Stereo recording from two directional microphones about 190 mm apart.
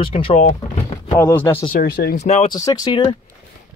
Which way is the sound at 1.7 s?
55° left (ahead or behind).